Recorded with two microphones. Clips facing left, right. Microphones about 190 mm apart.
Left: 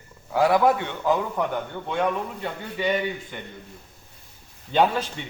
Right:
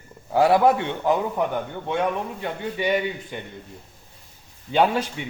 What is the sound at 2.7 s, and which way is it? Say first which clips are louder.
Speech: even; 15° right (ahead or behind).